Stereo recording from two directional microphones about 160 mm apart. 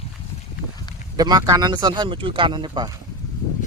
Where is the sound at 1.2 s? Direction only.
25° right (ahead or behind).